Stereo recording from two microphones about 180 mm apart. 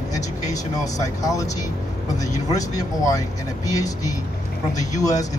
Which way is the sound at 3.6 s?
20° left (ahead or behind).